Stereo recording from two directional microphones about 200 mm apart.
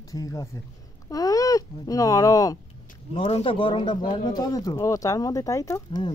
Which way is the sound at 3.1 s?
30° left (ahead or behind).